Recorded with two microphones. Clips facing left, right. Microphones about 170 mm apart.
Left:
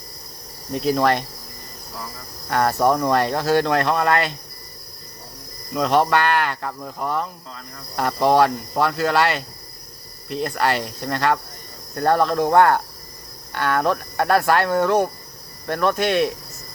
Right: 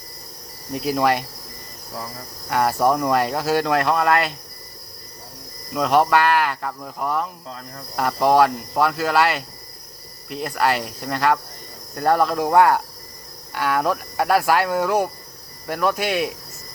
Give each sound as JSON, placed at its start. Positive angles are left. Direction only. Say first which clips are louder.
{"t": 0.7, "sound": "speech", "louder": "left 1 dB", "side_deg": -5}
{"t": 2.5, "sound": "speech", "louder": "even", "side_deg": -5}
{"t": 5.7, "sound": "speech", "louder": "right 1 dB", "side_deg": -5}